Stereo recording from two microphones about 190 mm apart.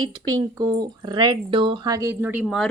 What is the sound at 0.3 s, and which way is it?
A woman's voice, 20° right (ahead or behind).